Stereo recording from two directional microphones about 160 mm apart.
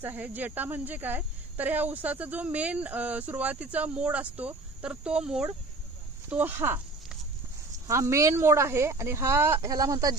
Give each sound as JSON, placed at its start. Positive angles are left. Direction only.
{"t": 0.0, "sound": "speech", "side_deg": -10}